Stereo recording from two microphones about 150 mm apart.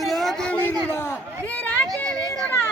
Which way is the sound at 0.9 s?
15° left (ahead or behind).